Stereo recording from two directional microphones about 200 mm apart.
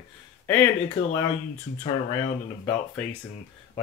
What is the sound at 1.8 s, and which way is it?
Speech, 25° left (ahead or behind).